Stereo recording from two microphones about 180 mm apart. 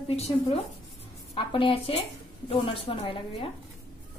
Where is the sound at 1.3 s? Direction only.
30° left (ahead or behind).